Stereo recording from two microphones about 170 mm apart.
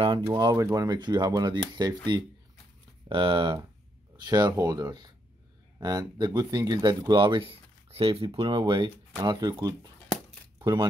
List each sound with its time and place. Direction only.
0.3 s speech: 20° right (ahead or behind)
3.1 s speech: 30° right (ahead or behind)